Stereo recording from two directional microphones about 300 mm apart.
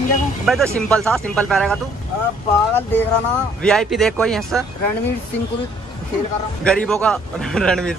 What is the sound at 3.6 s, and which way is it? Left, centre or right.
Speech, centre.